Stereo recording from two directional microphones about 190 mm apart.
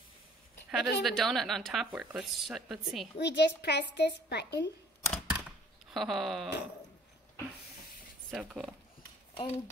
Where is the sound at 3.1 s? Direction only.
65° left (ahead or behind).